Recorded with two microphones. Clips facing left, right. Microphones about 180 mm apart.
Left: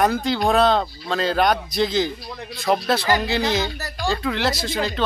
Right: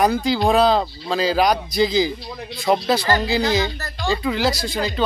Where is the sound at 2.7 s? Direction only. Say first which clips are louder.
Right 2 dB; 20° right (ahead or behind).